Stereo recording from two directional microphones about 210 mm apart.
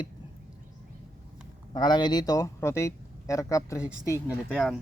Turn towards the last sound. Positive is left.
turn(degrees=5)  # may be behind; listen again after turning